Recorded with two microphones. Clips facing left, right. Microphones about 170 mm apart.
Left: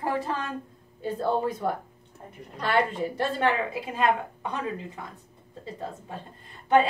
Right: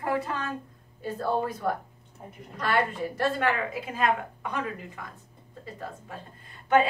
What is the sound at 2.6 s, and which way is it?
A woman's voice, 25° left (ahead or behind).